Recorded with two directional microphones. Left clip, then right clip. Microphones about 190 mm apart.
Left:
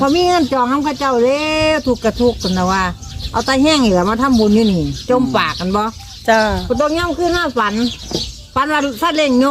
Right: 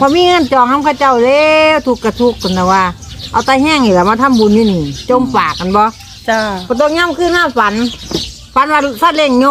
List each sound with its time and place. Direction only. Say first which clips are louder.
0.0 s speech: right 4 dB; 5° left (ahead or behind)
6.2 s speech: left 1 dB; 25° left (ahead or behind)
6.7 s speech: right 5 dB; centre (ahead or behind)